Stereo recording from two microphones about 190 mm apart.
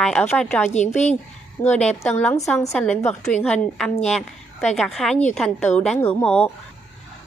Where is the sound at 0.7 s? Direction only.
40° left (ahead or behind).